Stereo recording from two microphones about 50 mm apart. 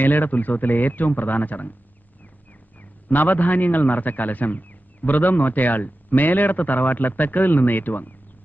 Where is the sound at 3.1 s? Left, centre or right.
Left.